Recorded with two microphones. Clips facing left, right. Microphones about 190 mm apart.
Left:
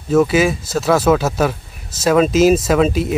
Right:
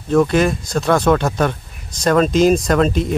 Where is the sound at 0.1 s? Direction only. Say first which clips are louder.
Left 1 dB; 5° left (ahead or behind).